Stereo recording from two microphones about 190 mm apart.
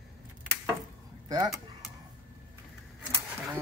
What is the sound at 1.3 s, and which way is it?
Speech, 20° right (ahead or behind).